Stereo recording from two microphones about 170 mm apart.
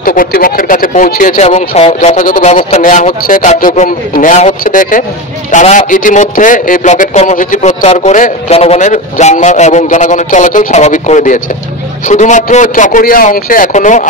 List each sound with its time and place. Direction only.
0.0 s a man's voice: 55° left (ahead or behind)